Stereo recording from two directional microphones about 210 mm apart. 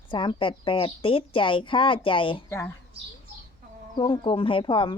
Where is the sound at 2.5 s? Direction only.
10° left (ahead or behind).